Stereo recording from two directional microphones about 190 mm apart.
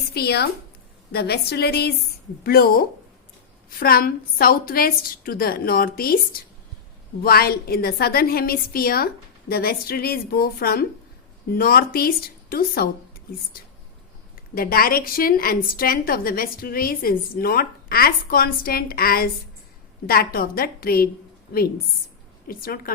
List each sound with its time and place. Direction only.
0.1 s a woman's voice: 55° left (ahead or behind)
7.2 s a woman's voice: 55° left (ahead or behind)
22.4 s a woman's voice: 50° left (ahead or behind)